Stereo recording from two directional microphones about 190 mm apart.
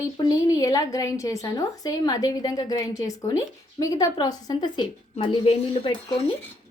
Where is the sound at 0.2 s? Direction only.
20° left (ahead or behind).